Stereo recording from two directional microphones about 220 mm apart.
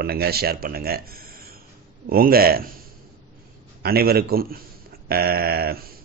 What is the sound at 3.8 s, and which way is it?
Speech, 45° right (ahead or behind).